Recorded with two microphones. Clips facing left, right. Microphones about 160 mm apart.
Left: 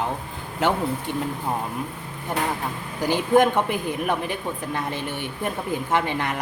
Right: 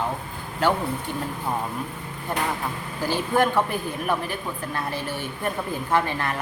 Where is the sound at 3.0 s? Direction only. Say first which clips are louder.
Left 4 dB; 20° left (ahead or behind).